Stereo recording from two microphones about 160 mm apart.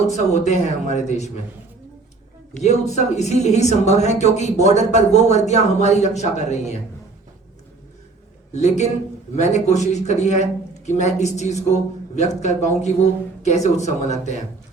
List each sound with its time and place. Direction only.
0.0 s a man's voice: 45° left (ahead or behind)
2.6 s a man's voice: 45° left (ahead or behind)
8.5 s a man's voice: 45° left (ahead or behind)